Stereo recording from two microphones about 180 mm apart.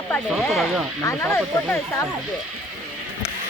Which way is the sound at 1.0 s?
15° left (ahead or behind).